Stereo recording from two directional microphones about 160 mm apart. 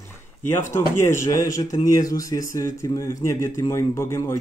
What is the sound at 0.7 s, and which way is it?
Speech, 15° left (ahead or behind).